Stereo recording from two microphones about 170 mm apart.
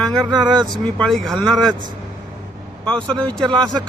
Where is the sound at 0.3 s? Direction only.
25° right (ahead or behind).